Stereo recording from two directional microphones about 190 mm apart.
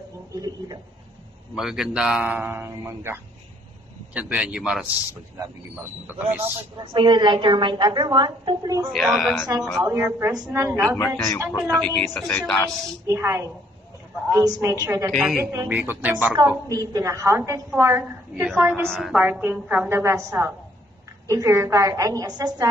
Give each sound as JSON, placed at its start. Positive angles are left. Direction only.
{"t": 0.3, "sound": "a sound", "side_deg": -20}
{"t": 1.5, "sound": "a woman's voice", "side_deg": 0}
{"t": 6.0, "sound": "a woman's voice", "side_deg": -10}
{"t": 6.4, "sound": "a woman's voice", "side_deg": -25}
{"t": 8.9, "sound": "a man's voice", "side_deg": 0}
{"t": 9.9, "sound": "a woman's voice", "side_deg": -15}
{"t": 10.8, "sound": "a man's voice", "side_deg": 5}
{"t": 13.0, "sound": "a woman's voice", "side_deg": -15}
{"t": 15.0, "sound": "a man's voice", "side_deg": 0}
{"t": 15.3, "sound": "a woman's voice", "side_deg": -15}